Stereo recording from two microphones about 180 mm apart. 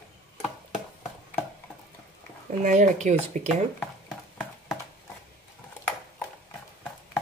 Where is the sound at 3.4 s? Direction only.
45° right (ahead or behind).